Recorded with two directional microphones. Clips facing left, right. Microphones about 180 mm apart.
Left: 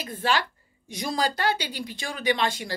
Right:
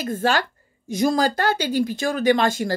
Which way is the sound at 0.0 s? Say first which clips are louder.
Right 5 dB; 45° right (ahead or behind).